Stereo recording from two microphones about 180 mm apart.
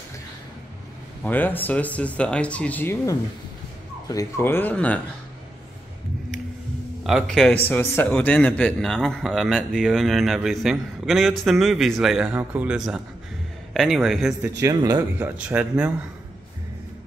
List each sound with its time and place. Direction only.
1.2 s speech: 10° left (ahead or behind)
7.0 s a man's voice: centre (ahead or behind)
14.6 s speech: 20° right (ahead or behind)
15.1 s speech: 10° right (ahead or behind)